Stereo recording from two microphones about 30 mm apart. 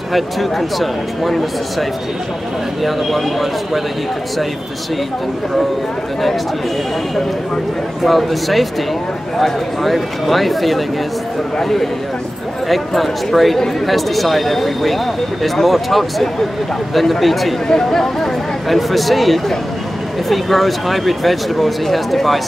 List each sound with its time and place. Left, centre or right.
0.1 s speech: centre
2.8 s speech: centre
8.0 s speech: centre
17.6 s speech: centre
18.7 s speech: centre